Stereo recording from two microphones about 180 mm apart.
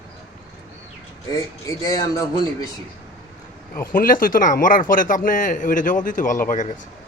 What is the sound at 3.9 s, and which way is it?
Speech, 50° left (ahead or behind).